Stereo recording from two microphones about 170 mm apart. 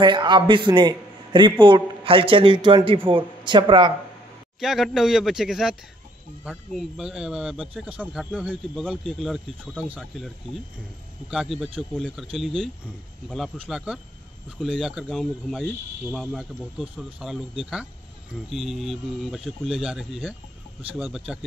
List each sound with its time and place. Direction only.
0.0 s a man's voice: 25° right (ahead or behind)
4.6 s speech: centre (ahead or behind)